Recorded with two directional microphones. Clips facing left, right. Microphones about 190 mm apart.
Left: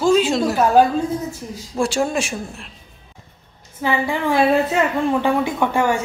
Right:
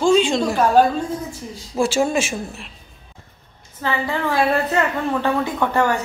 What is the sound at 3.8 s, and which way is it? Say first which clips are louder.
A woman's voice: left 2 dB; 10° left (ahead or behind).